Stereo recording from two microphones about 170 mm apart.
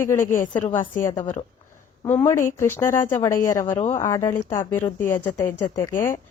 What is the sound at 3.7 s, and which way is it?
Speech, 40° left (ahead or behind).